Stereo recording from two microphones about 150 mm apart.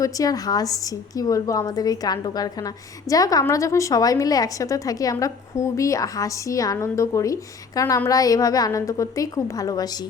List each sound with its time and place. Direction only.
0.0 s a woman's voice: 25° left (ahead or behind)